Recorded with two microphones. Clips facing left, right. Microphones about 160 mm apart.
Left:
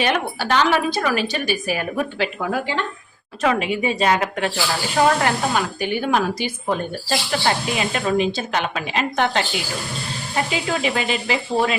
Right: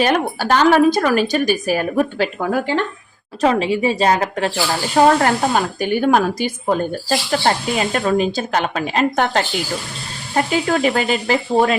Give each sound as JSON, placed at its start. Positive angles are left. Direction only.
{"t": 0.0, "sound": "speech", "side_deg": -40}
{"t": 3.4, "sound": "a woman's voice", "side_deg": -30}